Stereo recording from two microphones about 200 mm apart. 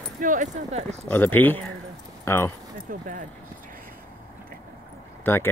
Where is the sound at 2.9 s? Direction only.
40° right (ahead or behind).